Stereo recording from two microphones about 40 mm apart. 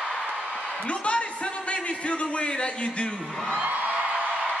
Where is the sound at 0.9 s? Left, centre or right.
Left.